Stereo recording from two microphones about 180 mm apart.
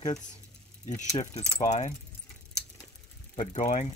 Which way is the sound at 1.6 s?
40° left (ahead or behind).